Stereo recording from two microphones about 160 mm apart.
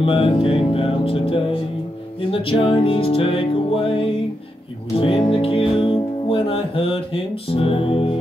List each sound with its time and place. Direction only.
0.0 s music: 35° left (ahead or behind)